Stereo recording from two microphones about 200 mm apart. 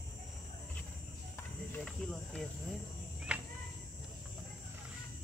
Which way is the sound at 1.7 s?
5° left (ahead or behind).